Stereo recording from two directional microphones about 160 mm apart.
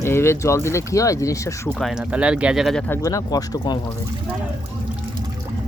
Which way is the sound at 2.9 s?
20° left (ahead or behind).